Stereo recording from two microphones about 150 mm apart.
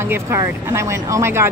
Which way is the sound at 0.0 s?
15° right (ahead or behind).